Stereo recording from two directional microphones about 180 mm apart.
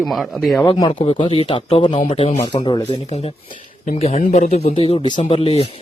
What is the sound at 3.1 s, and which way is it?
Speech, 35° left (ahead or behind).